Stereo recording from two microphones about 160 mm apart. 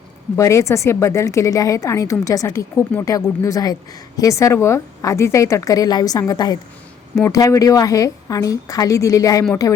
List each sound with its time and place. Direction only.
0.3 s a woman's voice: 20° left (ahead or behind)